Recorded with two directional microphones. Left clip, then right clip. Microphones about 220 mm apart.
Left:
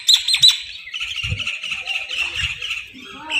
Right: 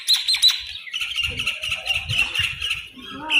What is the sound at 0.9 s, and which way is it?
Bird, 45° right (ahead or behind).